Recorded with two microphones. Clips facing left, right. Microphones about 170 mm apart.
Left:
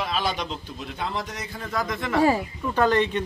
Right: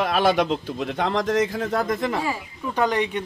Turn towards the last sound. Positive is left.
turn(degrees=-10)  # may be behind; listen again after turning